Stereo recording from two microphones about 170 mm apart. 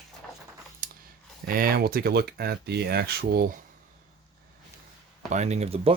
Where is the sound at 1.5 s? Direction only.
60° right (ahead or behind).